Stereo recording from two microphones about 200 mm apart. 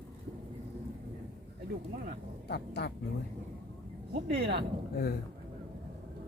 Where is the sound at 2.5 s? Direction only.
55° left (ahead or behind).